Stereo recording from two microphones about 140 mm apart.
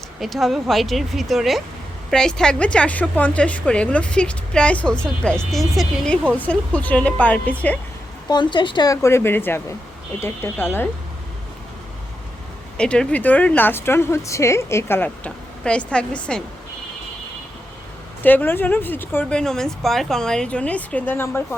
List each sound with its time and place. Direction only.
0.2 s speech: centre (ahead or behind)
6.3 s speech: 10° left (ahead or behind)
8.3 s speech: 35° left (ahead or behind); by 10.8 s 15° left (ahead or behind)
12.7 s speech: 5° left (ahead or behind)
18.2 s speech: 15° left (ahead or behind)